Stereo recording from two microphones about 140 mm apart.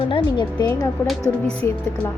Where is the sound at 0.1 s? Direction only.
30° left (ahead or behind).